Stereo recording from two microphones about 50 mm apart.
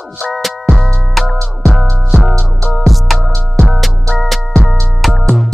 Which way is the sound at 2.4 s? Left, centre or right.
Centre.